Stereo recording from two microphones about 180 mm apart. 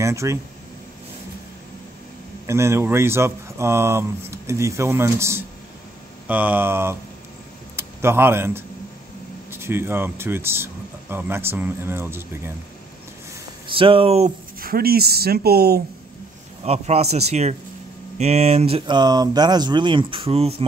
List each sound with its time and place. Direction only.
0.0 s speech: 15° right (ahead or behind)
2.4 s speech: 15° right (ahead or behind)
13.7 s speech: 30° right (ahead or behind)
14.6 s speech: 55° right (ahead or behind)
16.6 s speech: 35° right (ahead or behind)